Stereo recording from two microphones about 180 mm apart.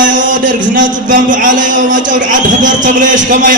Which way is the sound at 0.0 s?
45° right (ahead or behind).